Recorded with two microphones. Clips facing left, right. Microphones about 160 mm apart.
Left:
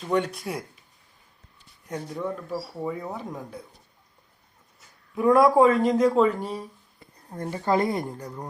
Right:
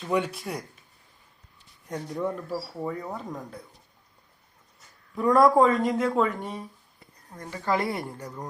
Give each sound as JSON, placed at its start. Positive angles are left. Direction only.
{"t": 0.0, "sound": "speech", "side_deg": -5}
{"t": 1.9, "sound": "speech", "side_deg": -5}
{"t": 2.8, "sound": "speech", "side_deg": 5}
{"t": 5.1, "sound": "a man's voice", "side_deg": 5}
{"t": 5.8, "sound": "speech", "side_deg": 30}